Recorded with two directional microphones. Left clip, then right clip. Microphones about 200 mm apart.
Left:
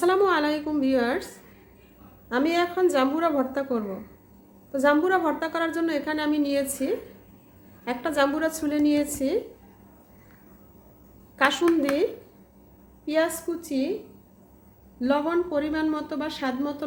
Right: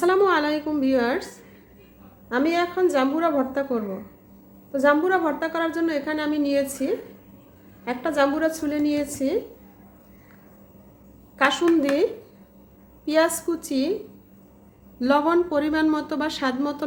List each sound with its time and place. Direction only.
0.0 s a woman's voice: 5° right (ahead or behind)
2.3 s a woman's voice: centre (ahead or behind)
11.3 s speech: centre (ahead or behind)
13.1 s speech: 20° right (ahead or behind)
14.9 s speech: 25° right (ahead or behind)